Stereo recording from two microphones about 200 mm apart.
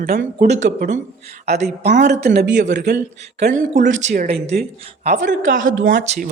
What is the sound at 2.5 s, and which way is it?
Speech, 60° right (ahead or behind).